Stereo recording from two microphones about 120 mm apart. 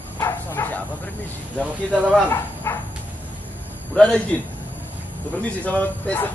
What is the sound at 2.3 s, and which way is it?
Speech, 20° left (ahead or behind).